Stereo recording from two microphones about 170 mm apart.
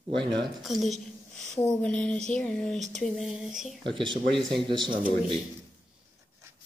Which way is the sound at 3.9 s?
30° right (ahead or behind).